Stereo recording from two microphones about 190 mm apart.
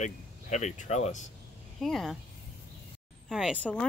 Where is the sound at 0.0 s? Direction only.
40° left (ahead or behind).